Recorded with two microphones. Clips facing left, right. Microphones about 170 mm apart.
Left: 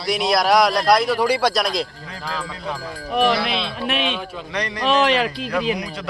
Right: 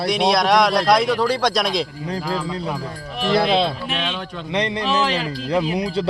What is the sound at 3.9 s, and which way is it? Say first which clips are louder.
Speech: left 2 dB; 10° left (ahead or behind).